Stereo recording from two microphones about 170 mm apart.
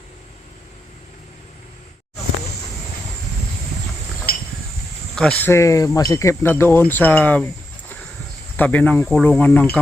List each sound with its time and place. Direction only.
4.3 s a sound: 60° left (ahead or behind)
5.4 s speech: 15° left (ahead or behind)
8.5 s speech: 10° left (ahead or behind)